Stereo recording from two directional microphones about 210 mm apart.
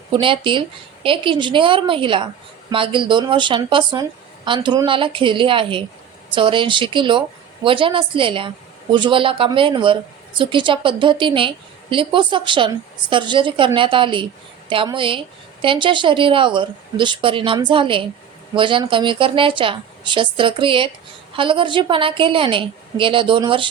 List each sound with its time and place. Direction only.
0.2 s a woman's voice: 25° right (ahead or behind)